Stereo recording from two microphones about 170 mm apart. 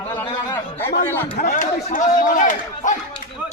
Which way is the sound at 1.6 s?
45° left (ahead or behind).